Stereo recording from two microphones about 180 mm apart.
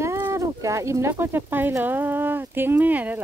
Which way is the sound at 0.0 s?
15° right (ahead or behind).